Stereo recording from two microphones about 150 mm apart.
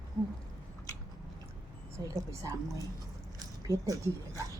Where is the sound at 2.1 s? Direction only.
20° right (ahead or behind).